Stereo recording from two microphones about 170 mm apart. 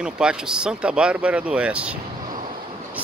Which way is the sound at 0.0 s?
5° right (ahead or behind).